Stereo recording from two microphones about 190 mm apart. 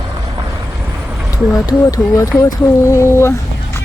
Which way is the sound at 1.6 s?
20° left (ahead or behind).